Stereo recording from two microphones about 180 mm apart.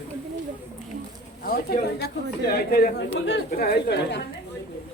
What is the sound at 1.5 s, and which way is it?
A woman's voice, 55° left (ahead or behind).